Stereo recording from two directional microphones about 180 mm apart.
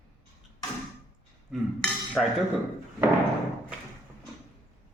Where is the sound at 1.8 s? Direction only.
5° left (ahead or behind).